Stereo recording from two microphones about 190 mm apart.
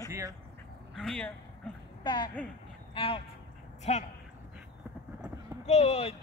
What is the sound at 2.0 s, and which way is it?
A man's voice, 25° left (ahead or behind).